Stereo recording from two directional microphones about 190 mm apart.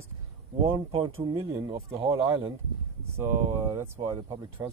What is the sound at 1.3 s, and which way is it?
Speech, 15° right (ahead or behind).